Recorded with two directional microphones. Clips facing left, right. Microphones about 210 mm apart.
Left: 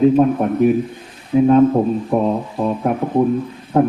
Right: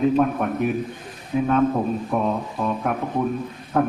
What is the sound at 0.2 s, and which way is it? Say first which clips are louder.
A man's voice: left 7 dB; 25° left (ahead or behind).